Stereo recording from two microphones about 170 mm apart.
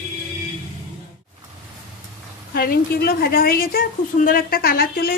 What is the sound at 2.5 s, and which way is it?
A woman's voice, 60° left (ahead or behind).